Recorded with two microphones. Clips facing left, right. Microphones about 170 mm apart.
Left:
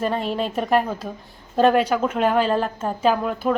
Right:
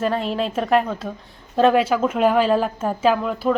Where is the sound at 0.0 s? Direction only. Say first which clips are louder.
Right 1 dB; centre (ahead or behind).